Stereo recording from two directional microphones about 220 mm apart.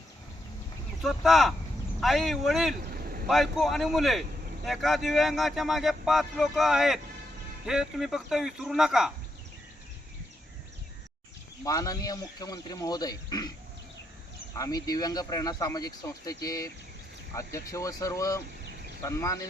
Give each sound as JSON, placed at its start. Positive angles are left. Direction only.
{"t": 1.0, "sound": "speech", "side_deg": 0}
{"t": 2.8, "sound": "vehicle", "side_deg": -45}
{"t": 3.2, "sound": "speech", "side_deg": 0}
{"t": 11.6, "sound": "speech", "side_deg": 15}
{"t": 14.5, "sound": "speech", "side_deg": 15}